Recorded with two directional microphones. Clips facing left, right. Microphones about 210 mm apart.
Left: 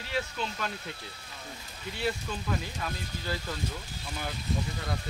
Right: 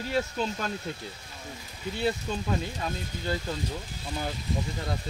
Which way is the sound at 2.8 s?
25° right (ahead or behind).